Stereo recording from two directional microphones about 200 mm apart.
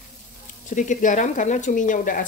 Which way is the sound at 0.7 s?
40° left (ahead or behind).